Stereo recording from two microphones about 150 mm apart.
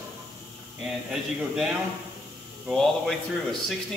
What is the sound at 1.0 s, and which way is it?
Speech, 5° right (ahead or behind).